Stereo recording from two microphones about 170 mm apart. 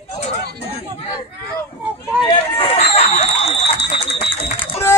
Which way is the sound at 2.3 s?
35° left (ahead or behind).